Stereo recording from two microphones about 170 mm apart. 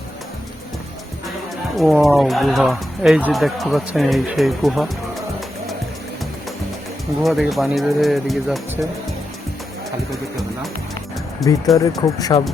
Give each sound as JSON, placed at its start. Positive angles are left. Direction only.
{"t": 1.7, "sound": "speech", "side_deg": 0}
{"t": 7.2, "sound": "speech", "side_deg": 0}
{"t": 11.4, "sound": "speech", "side_deg": 0}
{"t": 11.8, "sound": "speech", "side_deg": 20}